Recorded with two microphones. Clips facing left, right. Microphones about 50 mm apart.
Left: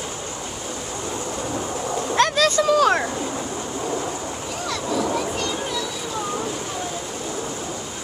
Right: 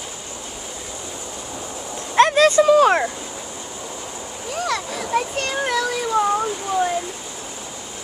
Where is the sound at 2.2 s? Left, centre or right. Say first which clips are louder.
Right 6 dB; right.